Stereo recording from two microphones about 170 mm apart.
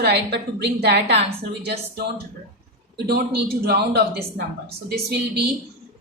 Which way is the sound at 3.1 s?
70° right (ahead or behind).